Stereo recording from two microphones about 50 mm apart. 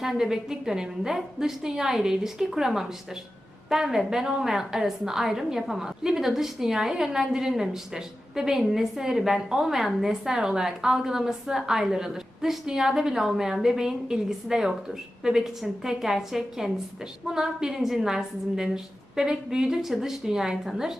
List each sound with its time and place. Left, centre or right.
0.0 s a woman's voice: centre